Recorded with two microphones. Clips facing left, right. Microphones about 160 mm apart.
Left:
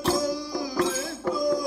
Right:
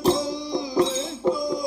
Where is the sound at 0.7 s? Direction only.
20° right (ahead or behind).